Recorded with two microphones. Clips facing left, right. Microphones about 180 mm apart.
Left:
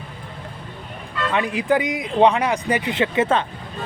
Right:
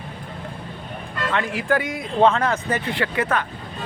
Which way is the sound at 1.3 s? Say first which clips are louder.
Left 2 dB; 15° left (ahead or behind).